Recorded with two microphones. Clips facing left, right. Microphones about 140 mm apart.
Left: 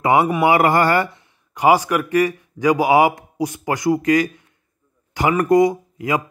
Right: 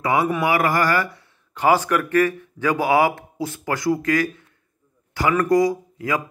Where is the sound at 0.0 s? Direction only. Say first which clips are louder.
Left 4 dB; 25° left (ahead or behind).